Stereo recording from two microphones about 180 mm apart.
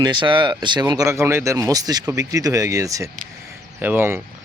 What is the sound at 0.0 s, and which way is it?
Speech, 25° right (ahead or behind).